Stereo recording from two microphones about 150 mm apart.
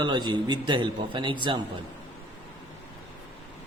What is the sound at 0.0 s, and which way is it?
Speech, 30° right (ahead or behind).